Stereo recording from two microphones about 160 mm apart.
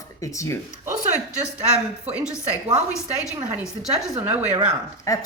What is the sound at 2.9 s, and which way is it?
Speech, 20° left (ahead or behind).